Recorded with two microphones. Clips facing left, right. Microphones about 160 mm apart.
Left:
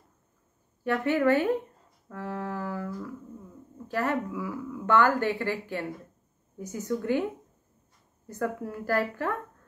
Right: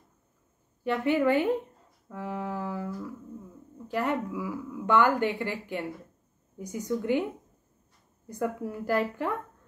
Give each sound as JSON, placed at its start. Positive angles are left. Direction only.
{"t": 0.8, "sound": "a woman's voice", "side_deg": -15}
{"t": 8.3, "sound": "a woman's voice", "side_deg": -15}